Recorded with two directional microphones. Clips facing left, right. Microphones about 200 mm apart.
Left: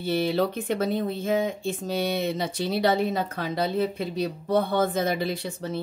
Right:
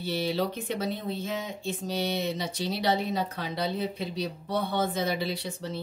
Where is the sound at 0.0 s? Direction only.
50° left (ahead or behind).